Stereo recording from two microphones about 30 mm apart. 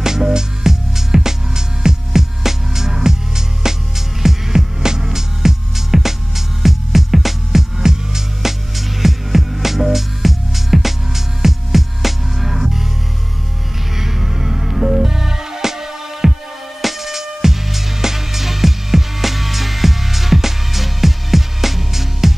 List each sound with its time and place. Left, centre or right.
0.0 s music: centre
13.9 s music: centre